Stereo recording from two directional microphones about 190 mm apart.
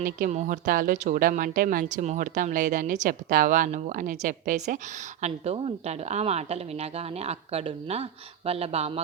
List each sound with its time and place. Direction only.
0.0 s a woman's voice: 40° right (ahead or behind)